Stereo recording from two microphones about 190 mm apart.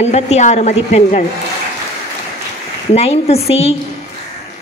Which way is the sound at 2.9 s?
30° left (ahead or behind).